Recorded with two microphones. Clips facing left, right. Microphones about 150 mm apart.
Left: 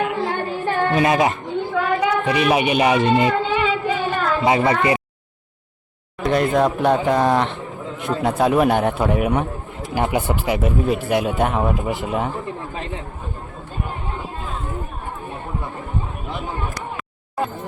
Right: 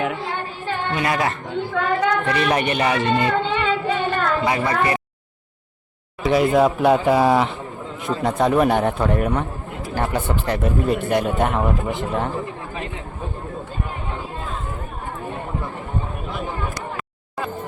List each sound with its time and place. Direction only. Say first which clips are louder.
0.9 s speech: left 4 dB; 20° left (ahead or behind)
1.7 s a woman's voice: even; 10° left (ahead or behind)
3.3 s singing: left 1 dB; 5° left (ahead or behind)
4.4 s speech: left 7 dB; 20° left (ahead or behind)
6.2 s speech: right 1 dB; 5° right (ahead or behind)